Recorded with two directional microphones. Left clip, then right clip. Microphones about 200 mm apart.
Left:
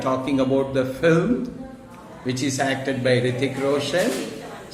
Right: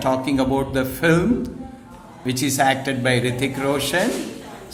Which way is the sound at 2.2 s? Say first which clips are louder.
Right 5 dB; 55° right (ahead or behind).